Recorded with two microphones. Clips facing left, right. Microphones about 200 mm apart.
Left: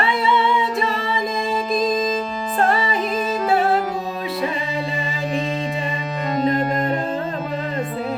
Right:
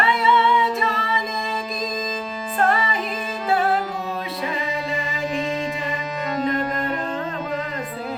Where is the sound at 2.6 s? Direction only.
30° left (ahead or behind).